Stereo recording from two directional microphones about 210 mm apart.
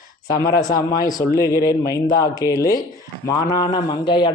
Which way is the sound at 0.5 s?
15° left (ahead or behind).